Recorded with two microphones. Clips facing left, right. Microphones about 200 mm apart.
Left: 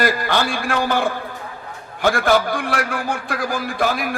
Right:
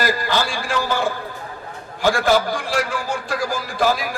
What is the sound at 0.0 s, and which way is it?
A man's voice, 55° left (ahead or behind).